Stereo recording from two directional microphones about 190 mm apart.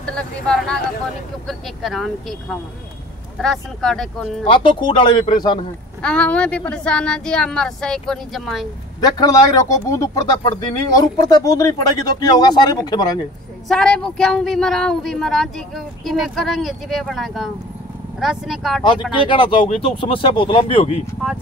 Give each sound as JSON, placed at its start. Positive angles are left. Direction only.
{"t": 0.0, "sound": "a woman's voice", "side_deg": 5}
{"t": 3.3, "sound": "a woman's voice", "side_deg": 0}
{"t": 4.5, "sound": "speech", "side_deg": 25}
{"t": 6.0, "sound": "a woman's voice", "side_deg": 5}
{"t": 9.0, "sound": "speech", "side_deg": 20}
{"t": 13.7, "sound": "a woman's voice", "side_deg": 5}
{"t": 19.2, "sound": "speech", "side_deg": 25}